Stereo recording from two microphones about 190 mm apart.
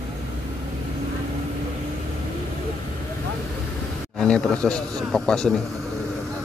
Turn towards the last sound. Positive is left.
turn(degrees=5)  # may be behind; listen again after turning